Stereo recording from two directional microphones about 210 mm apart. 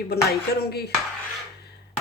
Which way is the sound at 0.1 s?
50° left (ahead or behind).